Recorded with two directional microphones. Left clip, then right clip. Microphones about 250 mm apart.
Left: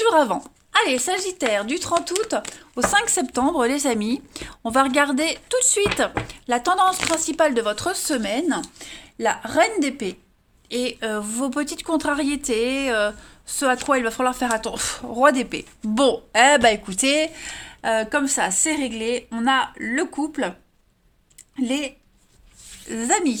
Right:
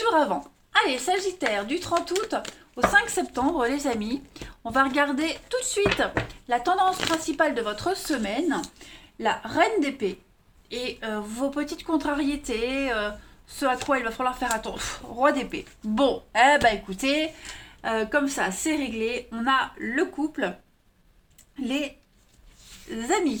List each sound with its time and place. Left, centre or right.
0.0 s speech: left
6.8 s speech: left
7.3 s speech: left
21.5 s speech: left